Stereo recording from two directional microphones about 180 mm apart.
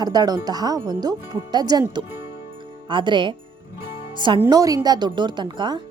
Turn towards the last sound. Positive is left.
turn(degrees=-25)  # may be behind; listen again after turning